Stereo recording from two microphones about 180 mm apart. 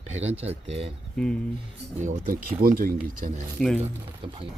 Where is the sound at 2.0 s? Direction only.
45° right (ahead or behind).